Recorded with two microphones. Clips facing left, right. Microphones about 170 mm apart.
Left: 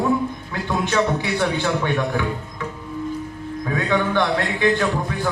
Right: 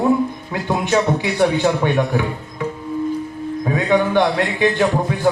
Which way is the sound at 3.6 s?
20° right (ahead or behind).